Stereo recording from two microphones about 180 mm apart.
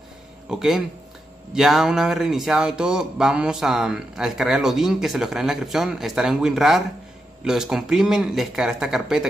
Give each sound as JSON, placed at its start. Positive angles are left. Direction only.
{"t": 0.5, "sound": "speech", "side_deg": -5}